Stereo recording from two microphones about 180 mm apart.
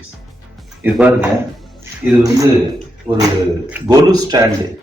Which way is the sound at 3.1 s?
30° right (ahead or behind).